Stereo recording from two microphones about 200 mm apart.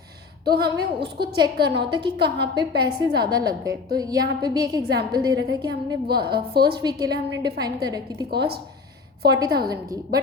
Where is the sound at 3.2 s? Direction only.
20° right (ahead or behind).